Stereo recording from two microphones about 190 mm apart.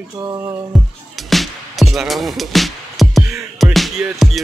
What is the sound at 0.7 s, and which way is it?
Music, centre (ahead or behind).